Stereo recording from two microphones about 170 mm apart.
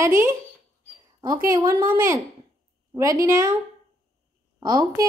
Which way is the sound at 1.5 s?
15° right (ahead or behind).